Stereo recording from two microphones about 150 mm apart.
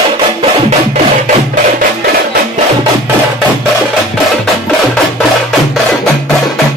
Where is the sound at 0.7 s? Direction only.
55° right (ahead or behind).